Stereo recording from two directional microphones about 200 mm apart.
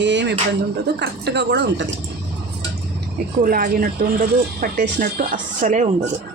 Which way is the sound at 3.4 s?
45° right (ahead or behind).